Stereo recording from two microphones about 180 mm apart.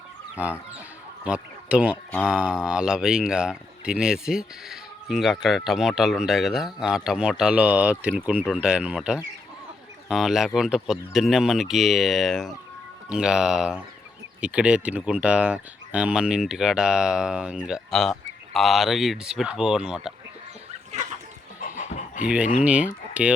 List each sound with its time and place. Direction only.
1.2 s speech: 5° right (ahead or behind)
20.9 s chicken: 40° right (ahead or behind)
21.6 s dog: 45° left (ahead or behind)
22.2 s speech: 5° right (ahead or behind)